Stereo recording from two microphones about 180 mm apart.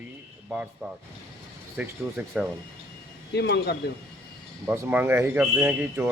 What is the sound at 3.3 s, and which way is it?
Speech, 65° left (ahead or behind).